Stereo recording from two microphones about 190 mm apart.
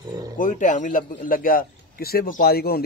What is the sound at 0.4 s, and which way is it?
A man's voice, 40° left (ahead or behind).